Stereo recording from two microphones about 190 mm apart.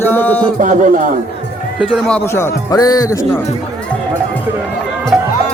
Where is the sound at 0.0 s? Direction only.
10° left (ahead or behind).